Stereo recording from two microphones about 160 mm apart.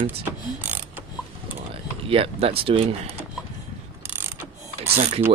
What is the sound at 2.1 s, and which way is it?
Speech, 35° right (ahead or behind).